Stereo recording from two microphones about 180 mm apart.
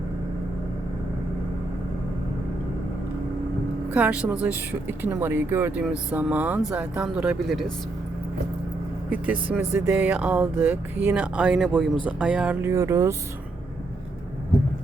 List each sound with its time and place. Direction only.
3.9 s speech: 5° right (ahead or behind)
9.0 s speech: 5° right (ahead or behind)